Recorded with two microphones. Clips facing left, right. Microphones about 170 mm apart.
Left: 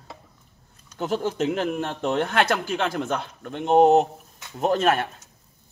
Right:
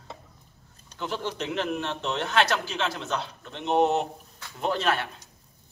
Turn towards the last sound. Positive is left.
turn(degrees=45)  # may be behind; listen again after turning